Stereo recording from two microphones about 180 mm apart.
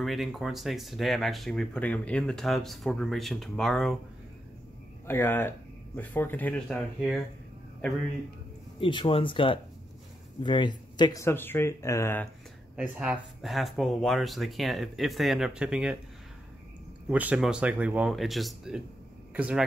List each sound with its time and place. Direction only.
0.0 s speech: centre (ahead or behind)
5.0 s speech: 10° left (ahead or behind)
8.7 s speech: 30° left (ahead or behind)
12.7 s speech: 5° right (ahead or behind)
17.1 s speech: 10° right (ahead or behind)